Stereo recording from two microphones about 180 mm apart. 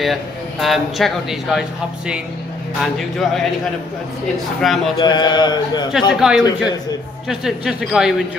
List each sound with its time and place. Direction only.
0.0 s speech: centre (ahead or behind)
2.8 s speech: centre (ahead or behind)
4.6 s speech: centre (ahead or behind)
4.9 s speech: 25° left (ahead or behind)
6.1 s speech: 5° right (ahead or behind)